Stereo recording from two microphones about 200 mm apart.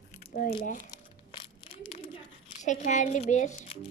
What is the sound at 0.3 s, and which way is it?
Speech, 50° left (ahead or behind).